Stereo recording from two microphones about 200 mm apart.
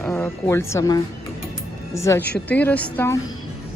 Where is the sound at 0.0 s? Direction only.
10° left (ahead or behind).